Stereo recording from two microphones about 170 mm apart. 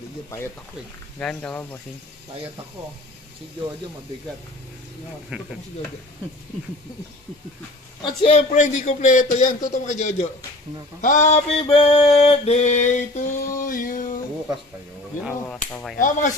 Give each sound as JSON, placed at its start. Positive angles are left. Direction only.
{"t": 1.2, "sound": "speech", "side_deg": 5}
{"t": 5.3, "sound": "stir", "side_deg": -10}
{"t": 8.0, "sound": "a sound", "side_deg": 35}
{"t": 15.7, "sound": "speech", "side_deg": 0}